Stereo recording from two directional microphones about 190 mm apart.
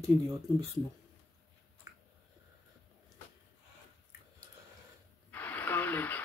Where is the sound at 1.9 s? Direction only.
20° right (ahead or behind).